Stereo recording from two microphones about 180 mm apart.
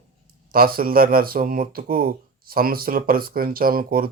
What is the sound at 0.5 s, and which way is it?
Speech, 55° right (ahead or behind).